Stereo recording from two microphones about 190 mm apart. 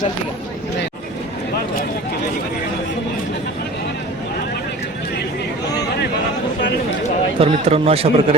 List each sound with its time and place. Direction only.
7.3 s speech: 30° right (ahead or behind)